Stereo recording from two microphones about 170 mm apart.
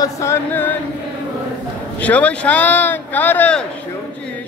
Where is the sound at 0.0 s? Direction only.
15° left (ahead or behind).